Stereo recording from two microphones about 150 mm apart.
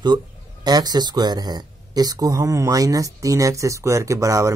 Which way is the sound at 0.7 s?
25° right (ahead or behind).